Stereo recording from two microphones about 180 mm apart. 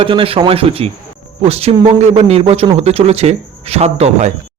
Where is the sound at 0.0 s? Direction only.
30° right (ahead or behind).